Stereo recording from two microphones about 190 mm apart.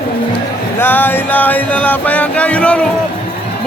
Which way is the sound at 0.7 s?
10° left (ahead or behind).